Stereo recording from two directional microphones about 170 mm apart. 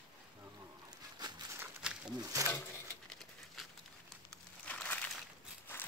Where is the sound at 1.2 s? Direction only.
25° right (ahead or behind).